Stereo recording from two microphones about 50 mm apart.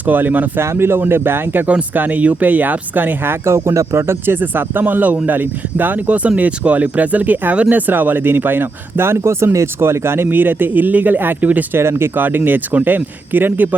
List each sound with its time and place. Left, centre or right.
0.0 s speech: right
0.6 s speech: right
1.6 s speech: right
3.4 s speech: right
4.4 s speech: right
11.7 s speech: right